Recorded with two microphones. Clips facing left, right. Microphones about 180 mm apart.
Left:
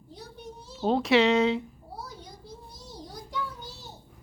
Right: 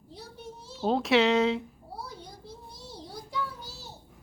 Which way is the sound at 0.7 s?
Centre (ahead or behind).